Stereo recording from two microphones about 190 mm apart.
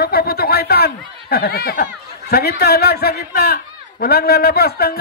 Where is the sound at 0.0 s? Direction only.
55° left (ahead or behind).